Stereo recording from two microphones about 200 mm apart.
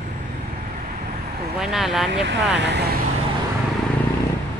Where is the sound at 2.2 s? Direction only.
60° right (ahead or behind).